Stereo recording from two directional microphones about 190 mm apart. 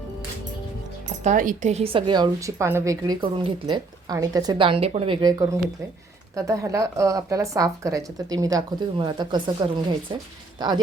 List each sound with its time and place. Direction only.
1.2 s a woman's voice: 40° right (ahead or behind); by 9.8 s 25° right (ahead or behind)